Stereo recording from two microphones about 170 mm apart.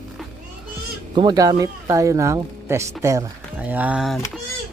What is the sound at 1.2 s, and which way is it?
Speech, 25° right (ahead or behind).